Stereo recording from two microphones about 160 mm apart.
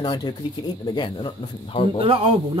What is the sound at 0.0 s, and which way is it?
Speech, 25° left (ahead or behind).